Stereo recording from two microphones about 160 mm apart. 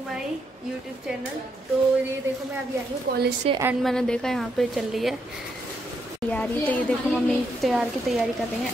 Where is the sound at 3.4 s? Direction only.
40° right (ahead or behind).